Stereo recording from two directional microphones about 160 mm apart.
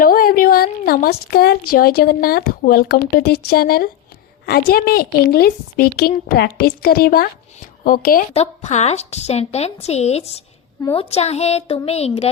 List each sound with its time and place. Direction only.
0.0 s a woman's voice: 60° left (ahead or behind)
4.4 s a woman's voice: 80° left; by 8.2 s 65° left (ahead or behind)
8.3 s a woman's voice: 45° left (ahead or behind)
11.1 s a sound: 40° left (ahead or behind)